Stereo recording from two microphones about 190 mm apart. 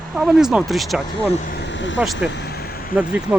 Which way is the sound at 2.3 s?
60° left (ahead or behind).